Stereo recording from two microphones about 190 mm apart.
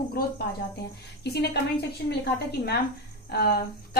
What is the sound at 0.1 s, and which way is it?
A woman's voice, 55° left (ahead or behind).